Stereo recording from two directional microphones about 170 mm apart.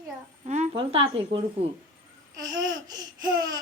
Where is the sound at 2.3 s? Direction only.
20° right (ahead or behind).